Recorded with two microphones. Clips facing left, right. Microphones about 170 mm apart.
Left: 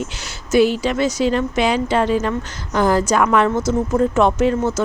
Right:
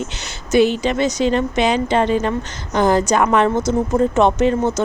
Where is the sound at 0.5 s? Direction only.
5° left (ahead or behind).